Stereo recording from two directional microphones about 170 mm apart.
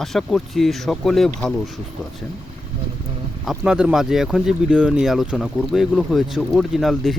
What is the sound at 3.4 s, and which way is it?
Speech, centre (ahead or behind).